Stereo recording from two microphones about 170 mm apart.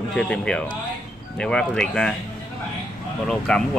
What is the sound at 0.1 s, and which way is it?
Speech, 5° left (ahead or behind).